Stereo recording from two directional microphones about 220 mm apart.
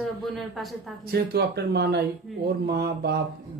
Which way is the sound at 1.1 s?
45° right (ahead or behind).